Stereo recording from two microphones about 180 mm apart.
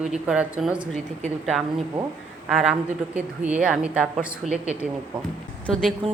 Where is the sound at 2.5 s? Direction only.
Centre (ahead or behind).